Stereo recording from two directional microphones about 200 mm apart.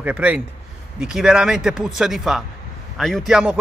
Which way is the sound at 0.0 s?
5° right (ahead or behind).